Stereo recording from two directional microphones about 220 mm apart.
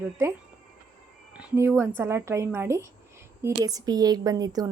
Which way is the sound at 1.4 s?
10° right (ahead or behind).